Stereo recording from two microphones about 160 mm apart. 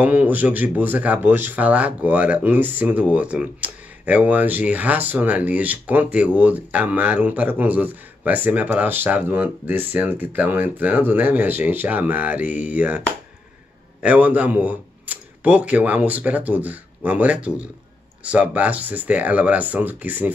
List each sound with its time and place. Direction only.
0.0 s speech: 10° right (ahead or behind)
14.0 s speech: 10° right (ahead or behind)